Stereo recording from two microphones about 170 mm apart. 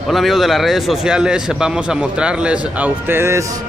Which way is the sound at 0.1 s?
Centre (ahead or behind).